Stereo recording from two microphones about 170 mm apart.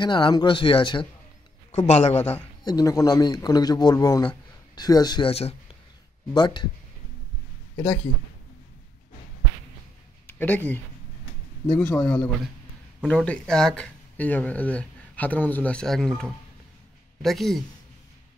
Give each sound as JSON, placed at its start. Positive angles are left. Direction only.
{"t": 0.0, "sound": "a man's voice", "side_deg": 25}
{"t": 2.6, "sound": "speech", "side_deg": 20}
{"t": 5.3, "sound": "a man's voice", "side_deg": 35}
{"t": 6.3, "sound": "speech", "side_deg": 25}
{"t": 10.2, "sound": "a man's voice", "side_deg": 10}